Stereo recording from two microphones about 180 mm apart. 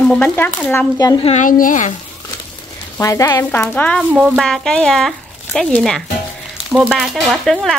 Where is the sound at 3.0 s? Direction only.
15° left (ahead or behind).